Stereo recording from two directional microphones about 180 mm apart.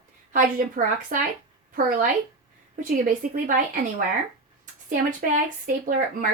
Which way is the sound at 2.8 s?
50° right (ahead or behind).